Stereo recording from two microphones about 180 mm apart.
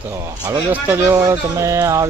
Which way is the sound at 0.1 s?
20° right (ahead or behind).